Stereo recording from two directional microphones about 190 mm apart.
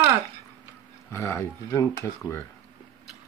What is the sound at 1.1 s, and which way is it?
Dishes, 15° left (ahead or behind).